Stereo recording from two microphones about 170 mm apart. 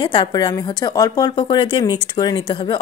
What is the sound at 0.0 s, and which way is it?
A woman's voice, 25° left (ahead or behind).